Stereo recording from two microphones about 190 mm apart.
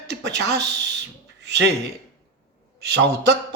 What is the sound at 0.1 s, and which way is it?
Speech, 65° right (ahead or behind).